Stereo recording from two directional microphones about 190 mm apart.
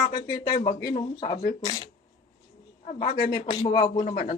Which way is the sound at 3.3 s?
25° left (ahead or behind).